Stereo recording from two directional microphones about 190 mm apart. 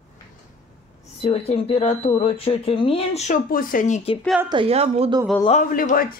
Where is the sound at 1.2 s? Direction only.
35° left (ahead or behind).